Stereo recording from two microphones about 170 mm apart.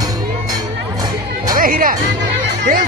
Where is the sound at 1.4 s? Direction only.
55° right (ahead or behind).